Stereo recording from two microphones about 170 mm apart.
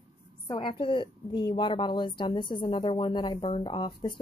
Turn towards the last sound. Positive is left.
turn(degrees=30)  # may be behind; listen again after turning